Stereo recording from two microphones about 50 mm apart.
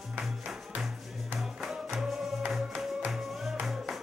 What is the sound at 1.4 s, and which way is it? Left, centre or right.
Music, centre.